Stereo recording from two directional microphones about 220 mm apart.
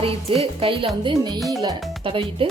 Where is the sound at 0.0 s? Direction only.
25° right (ahead or behind).